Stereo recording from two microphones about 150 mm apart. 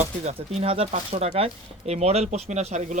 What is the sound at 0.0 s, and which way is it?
Speech, 45° right (ahead or behind).